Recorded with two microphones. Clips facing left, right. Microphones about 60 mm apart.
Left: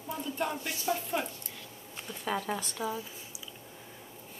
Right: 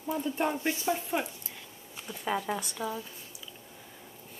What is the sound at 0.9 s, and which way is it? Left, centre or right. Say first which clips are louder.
A woman's voice: right 1 dB; centre.